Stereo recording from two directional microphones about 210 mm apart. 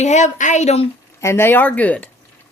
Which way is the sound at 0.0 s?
35° left (ahead or behind).